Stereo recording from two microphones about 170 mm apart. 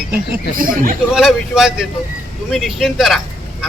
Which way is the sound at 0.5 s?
55° right (ahead or behind).